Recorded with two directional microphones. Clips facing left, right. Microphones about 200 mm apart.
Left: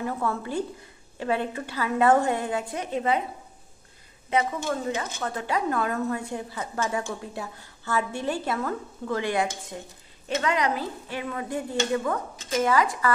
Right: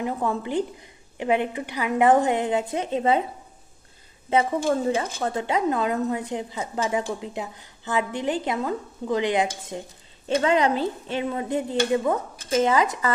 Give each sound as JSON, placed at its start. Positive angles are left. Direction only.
{"t": 0.0, "sound": "a woman's voice", "side_deg": -15}
{"t": 4.3, "sound": "a woman's voice", "side_deg": -30}